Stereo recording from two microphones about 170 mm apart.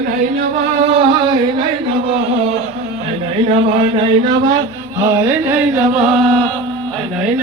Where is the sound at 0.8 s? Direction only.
30° right (ahead or behind).